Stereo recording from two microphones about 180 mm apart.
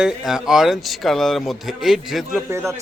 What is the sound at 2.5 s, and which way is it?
Speech, 15° right (ahead or behind).